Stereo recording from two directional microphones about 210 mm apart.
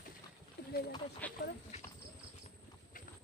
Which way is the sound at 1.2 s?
10° left (ahead or behind).